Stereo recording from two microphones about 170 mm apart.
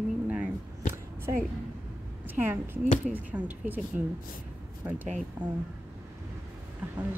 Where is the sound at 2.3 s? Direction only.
10° right (ahead or behind).